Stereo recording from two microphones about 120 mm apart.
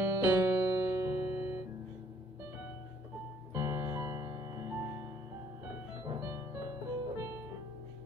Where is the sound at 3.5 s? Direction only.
20° right (ahead or behind).